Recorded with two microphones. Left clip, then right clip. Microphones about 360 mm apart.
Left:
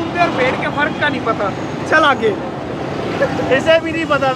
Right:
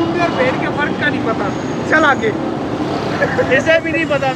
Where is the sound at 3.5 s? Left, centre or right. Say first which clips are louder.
Left 1 dB; centre.